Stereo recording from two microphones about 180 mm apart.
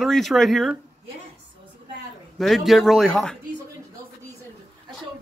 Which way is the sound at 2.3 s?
Centre (ahead or behind).